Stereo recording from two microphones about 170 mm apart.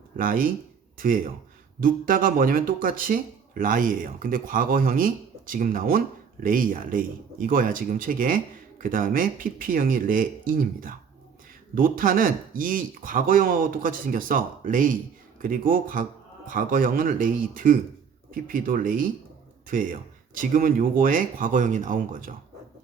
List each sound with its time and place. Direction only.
0.2 s speech: 55° right (ahead or behind)